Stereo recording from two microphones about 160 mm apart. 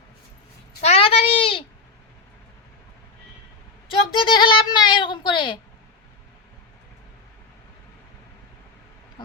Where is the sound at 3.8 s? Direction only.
30° left (ahead or behind).